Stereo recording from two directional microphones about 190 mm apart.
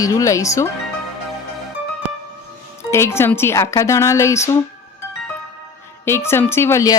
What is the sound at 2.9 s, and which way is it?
Speech, 15° left (ahead or behind).